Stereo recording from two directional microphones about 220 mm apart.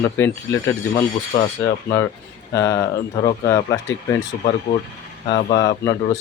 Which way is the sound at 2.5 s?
15° left (ahead or behind).